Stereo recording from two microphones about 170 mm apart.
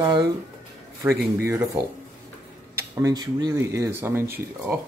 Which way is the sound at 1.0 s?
15° right (ahead or behind).